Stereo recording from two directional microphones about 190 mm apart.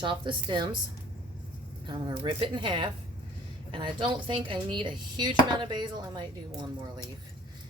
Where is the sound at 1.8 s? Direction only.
25° right (ahead or behind).